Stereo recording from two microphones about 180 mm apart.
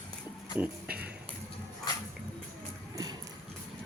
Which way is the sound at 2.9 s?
20° right (ahead or behind).